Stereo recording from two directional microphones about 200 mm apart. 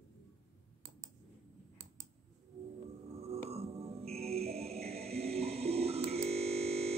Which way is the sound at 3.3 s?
30° right (ahead or behind).